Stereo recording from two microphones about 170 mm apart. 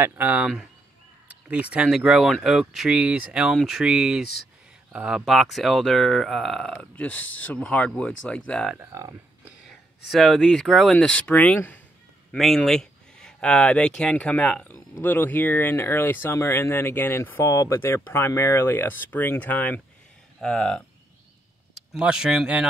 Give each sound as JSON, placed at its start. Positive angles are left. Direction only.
{"t": 0.0, "sound": "speech", "side_deg": -10}
{"t": 8.7, "sound": "speech", "side_deg": -20}
{"t": 9.4, "sound": "speech", "side_deg": 0}